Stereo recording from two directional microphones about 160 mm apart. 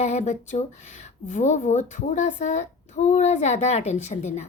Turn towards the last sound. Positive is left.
turn(degrees=45)  # may be behind; listen again after turning